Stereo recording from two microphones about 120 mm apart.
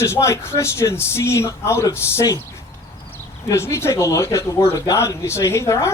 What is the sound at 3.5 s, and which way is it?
Speech, 25° left (ahead or behind).